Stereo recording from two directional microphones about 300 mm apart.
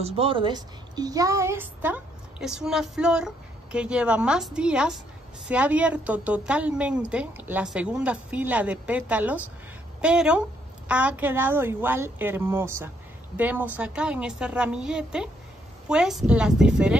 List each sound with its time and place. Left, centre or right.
0.0 s a woman's voice: centre